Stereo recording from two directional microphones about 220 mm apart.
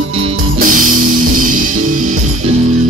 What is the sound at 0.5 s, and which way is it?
Music, 40° right (ahead or behind).